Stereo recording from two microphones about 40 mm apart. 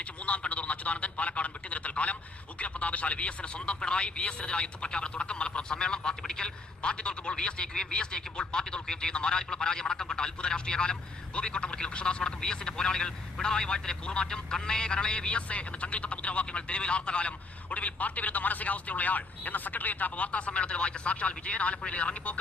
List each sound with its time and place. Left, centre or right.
0.0 s a man's voice: left